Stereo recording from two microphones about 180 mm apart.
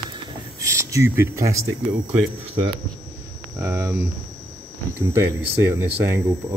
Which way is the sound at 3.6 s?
20° right (ahead or behind).